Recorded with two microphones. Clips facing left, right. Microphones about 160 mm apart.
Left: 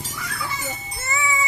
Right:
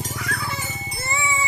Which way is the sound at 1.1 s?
25° right (ahead or behind).